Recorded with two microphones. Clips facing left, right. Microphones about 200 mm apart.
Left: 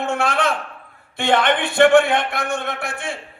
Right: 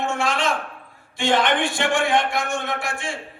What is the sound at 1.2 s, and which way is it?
A man's voice, 60° left (ahead or behind).